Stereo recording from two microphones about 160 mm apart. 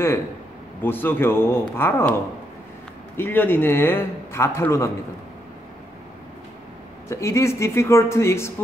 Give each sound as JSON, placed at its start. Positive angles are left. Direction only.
{"t": 0.8, "sound": "a man's voice", "side_deg": 15}
{"t": 3.2, "sound": "a man's voice", "side_deg": 15}
{"t": 7.1, "sound": "a man's voice", "side_deg": 15}